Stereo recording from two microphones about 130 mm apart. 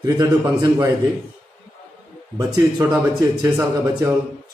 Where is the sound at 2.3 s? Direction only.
25° right (ahead or behind).